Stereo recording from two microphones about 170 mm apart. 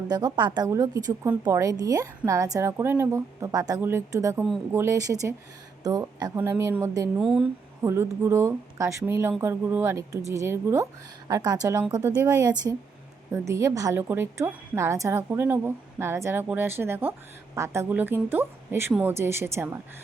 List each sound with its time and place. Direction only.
0.1 s a woman's voice: 25° right (ahead or behind)
7.2 s speech: centre (ahead or behind)
7.8 s a woman's voice: 15° right (ahead or behind)